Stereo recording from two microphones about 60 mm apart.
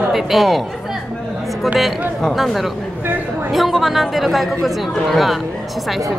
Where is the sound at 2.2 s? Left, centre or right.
Centre.